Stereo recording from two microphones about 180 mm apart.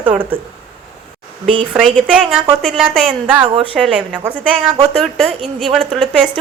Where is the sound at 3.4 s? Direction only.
30° right (ahead or behind).